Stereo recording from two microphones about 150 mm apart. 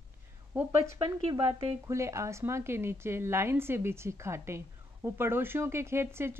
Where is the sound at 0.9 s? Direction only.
30° right (ahead or behind).